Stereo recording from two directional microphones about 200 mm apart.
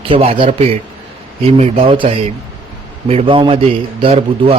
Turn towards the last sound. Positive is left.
turn(degrees=-30)  # may be behind; listen again after turning